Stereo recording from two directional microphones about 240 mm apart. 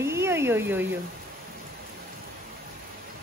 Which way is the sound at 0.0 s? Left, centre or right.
Centre.